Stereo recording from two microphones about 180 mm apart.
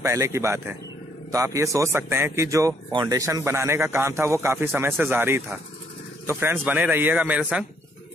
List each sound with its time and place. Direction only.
0.0 s speech: 15° right (ahead or behind)